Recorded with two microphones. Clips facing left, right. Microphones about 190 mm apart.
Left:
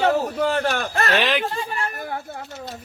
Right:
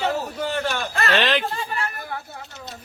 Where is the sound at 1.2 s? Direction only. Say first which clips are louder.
Right 2 dB; 5° left (ahead or behind).